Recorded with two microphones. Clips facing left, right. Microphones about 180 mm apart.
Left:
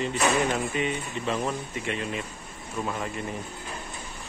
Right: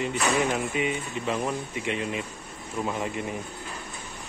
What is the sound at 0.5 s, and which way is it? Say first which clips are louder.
Speech: even; 10° right (ahead or behind).